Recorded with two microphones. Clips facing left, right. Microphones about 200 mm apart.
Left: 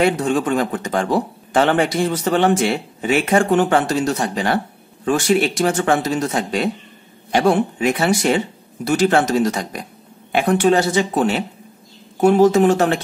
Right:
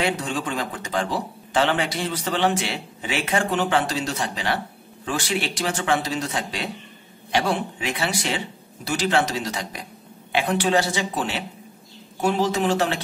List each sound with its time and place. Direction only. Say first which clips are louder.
0.0 s speech: left 8 dB; 50° left (ahead or behind)